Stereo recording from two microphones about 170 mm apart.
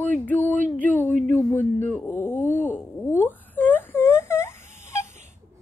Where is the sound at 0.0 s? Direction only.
10° left (ahead or behind).